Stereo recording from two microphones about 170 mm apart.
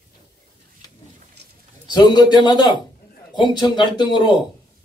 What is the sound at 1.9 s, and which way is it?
Speech, 25° left (ahead or behind).